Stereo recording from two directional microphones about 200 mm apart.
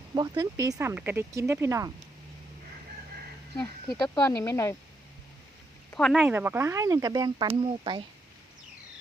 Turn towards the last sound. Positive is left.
turn(degrees=-25)  # may be behind; listen again after turning